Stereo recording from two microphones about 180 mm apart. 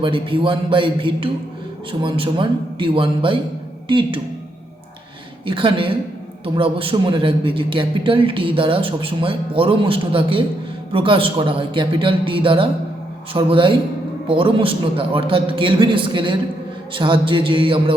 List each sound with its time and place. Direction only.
0.0 s a man's voice: 30° right (ahead or behind)
5.5 s a man's voice: 30° right (ahead or behind)